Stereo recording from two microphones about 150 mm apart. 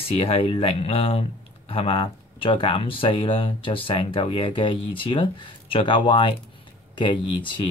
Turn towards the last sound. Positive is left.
turn(degrees=35)  # may be behind; listen again after turning